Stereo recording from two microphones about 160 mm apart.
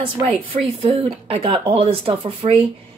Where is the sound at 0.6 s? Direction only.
35° right (ahead or behind).